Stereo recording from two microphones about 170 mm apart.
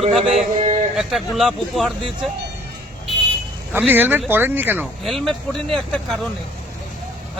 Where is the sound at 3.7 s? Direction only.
10° right (ahead or behind).